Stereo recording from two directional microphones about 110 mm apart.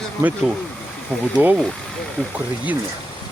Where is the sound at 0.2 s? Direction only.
15° right (ahead or behind).